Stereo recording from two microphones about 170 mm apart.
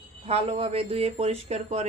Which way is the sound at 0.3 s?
35° right (ahead or behind).